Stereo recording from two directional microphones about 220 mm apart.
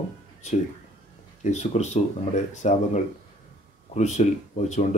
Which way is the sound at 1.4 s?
30° left (ahead or behind).